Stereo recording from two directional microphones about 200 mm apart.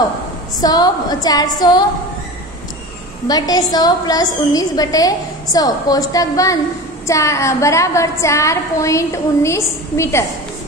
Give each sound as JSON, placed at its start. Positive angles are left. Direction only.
{"t": 0.6, "sound": "a woman's voice", "side_deg": 20}
{"t": 3.3, "sound": "a woman's voice", "side_deg": 20}